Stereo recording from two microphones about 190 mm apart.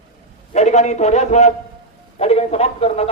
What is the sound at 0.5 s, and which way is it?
A man's voice, 35° left (ahead or behind).